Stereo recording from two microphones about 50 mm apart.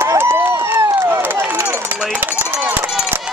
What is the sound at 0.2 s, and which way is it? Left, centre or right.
Run, right.